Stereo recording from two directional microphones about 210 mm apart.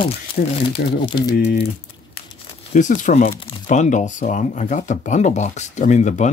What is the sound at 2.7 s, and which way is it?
Speech, 35° left (ahead or behind).